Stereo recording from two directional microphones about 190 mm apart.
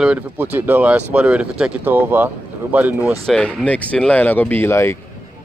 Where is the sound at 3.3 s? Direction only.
5° left (ahead or behind).